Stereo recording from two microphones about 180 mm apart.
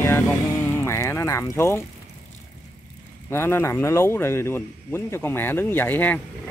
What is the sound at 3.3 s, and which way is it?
A man's voice, 15° left (ahead or behind).